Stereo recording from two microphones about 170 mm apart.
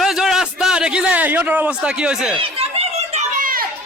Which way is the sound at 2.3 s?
35° right (ahead or behind).